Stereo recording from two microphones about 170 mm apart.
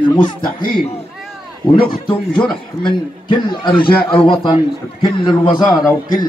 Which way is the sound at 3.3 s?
30° left (ahead or behind).